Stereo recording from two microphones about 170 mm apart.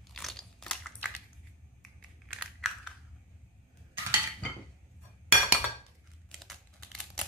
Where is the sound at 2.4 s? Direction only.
5° left (ahead or behind).